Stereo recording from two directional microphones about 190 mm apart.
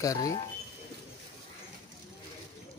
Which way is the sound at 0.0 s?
20° left (ahead or behind).